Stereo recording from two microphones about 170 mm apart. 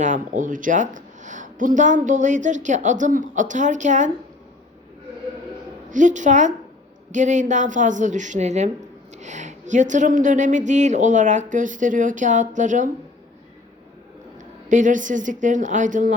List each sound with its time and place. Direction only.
0.0 s a woman's voice: 50° right (ahead or behind)
5.9 s a woman's voice: 50° right (ahead or behind)
14.7 s a woman's voice: 50° right (ahead or behind)